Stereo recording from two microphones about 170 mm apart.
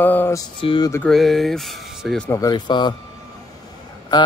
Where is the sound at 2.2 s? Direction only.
20° left (ahead or behind).